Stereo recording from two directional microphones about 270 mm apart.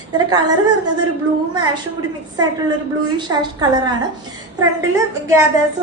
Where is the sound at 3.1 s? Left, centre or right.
Centre.